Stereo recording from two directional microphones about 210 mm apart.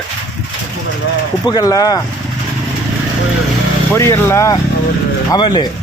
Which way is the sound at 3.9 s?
10° left (ahead or behind).